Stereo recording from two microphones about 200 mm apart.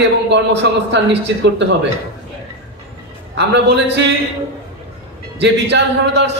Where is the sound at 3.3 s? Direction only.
60° right (ahead or behind).